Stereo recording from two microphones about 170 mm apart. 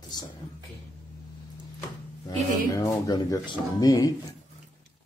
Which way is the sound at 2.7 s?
20° left (ahead or behind).